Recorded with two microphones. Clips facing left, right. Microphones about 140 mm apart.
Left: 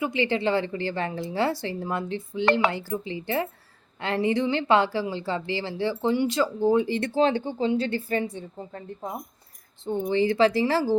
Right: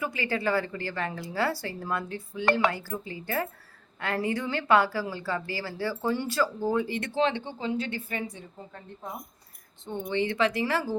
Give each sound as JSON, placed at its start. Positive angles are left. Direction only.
{"t": 0.0, "sound": "speech", "side_deg": 20}
{"t": 9.8, "sound": "speech", "side_deg": 35}